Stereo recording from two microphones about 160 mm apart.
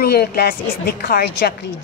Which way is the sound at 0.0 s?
80° left.